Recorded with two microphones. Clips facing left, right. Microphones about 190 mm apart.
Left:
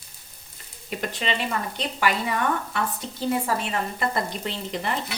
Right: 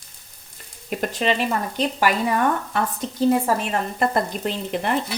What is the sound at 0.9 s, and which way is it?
Speech, 45° right (ahead or behind).